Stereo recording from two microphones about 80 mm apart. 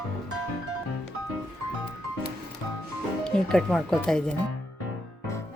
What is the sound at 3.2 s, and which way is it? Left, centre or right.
Speech, centre.